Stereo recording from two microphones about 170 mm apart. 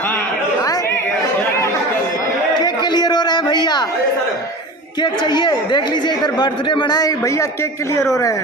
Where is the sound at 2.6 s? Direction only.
25° left (ahead or behind).